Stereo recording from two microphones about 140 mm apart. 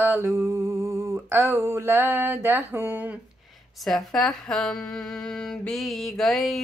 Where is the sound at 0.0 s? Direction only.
15° right (ahead or behind).